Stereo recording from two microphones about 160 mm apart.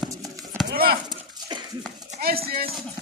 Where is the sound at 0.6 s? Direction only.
70° right (ahead or behind).